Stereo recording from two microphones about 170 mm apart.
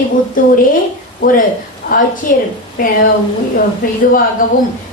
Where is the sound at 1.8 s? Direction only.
50° left (ahead or behind).